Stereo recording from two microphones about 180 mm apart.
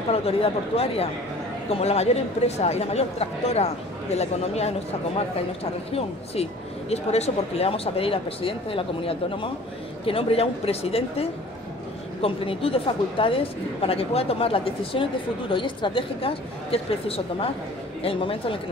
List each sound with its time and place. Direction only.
0.1 s speech: 30° left (ahead or behind)